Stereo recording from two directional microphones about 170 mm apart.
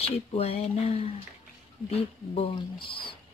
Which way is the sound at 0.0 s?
35° left (ahead or behind).